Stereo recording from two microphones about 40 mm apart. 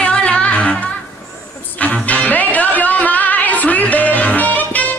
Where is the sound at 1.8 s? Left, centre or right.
Left.